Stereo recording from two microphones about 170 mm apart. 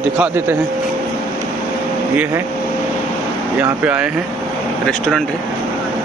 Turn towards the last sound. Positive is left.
turn(degrees=0)  # may be behind; listen again after turning